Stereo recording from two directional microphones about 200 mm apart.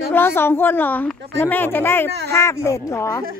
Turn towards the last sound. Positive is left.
turn(degrees=15)  # may be behind; listen again after turning